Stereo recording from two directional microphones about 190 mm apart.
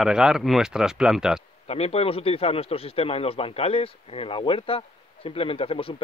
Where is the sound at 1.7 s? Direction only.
35° left (ahead or behind).